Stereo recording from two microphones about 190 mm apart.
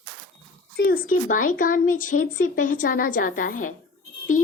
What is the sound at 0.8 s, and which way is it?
A woman's voice, 50° left (ahead or behind).